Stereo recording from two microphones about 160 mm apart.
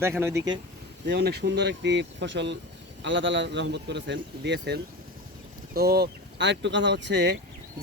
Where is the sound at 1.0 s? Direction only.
90° right.